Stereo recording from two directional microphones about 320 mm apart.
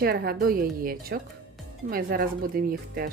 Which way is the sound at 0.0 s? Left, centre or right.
Right.